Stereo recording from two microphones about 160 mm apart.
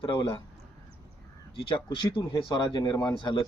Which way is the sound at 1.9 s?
30° left (ahead or behind).